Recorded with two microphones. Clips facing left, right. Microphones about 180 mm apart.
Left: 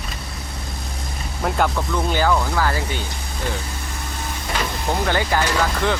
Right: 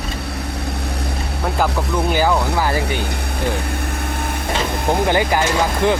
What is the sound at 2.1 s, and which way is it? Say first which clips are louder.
Speech: right 2 dB; 15° right (ahead or behind).